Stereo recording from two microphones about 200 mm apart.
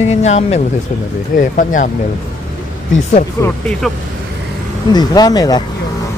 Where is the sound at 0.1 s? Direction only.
35° left (ahead or behind).